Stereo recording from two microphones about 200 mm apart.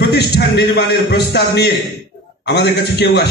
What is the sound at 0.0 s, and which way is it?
A man's voice, 55° left (ahead or behind).